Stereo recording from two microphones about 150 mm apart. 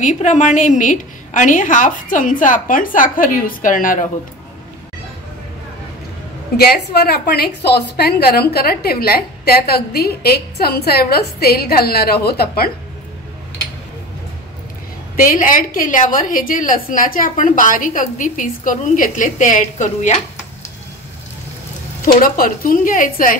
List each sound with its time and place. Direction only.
0.0 s a woman's voice: 55° left (ahead or behind)
6.5 s a woman's voice: 90° left
15.1 s a woman's voice: 65° left (ahead or behind)
22.0 s a woman's voice: 70° left (ahead or behind)